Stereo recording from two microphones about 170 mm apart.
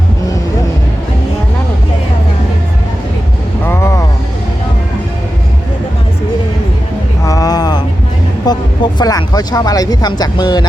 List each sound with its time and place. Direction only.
3.6 s heart sounds: 15° left (ahead or behind)
7.3 s a sound: 20° left (ahead or behind)
8.4 s speech: 25° left (ahead or behind)